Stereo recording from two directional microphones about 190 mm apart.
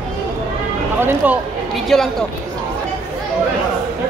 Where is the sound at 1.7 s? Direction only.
Centre (ahead or behind).